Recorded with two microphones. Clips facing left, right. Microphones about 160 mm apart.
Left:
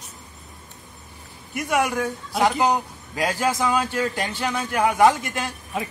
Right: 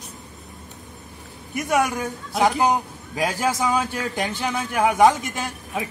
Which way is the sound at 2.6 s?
15° right (ahead or behind).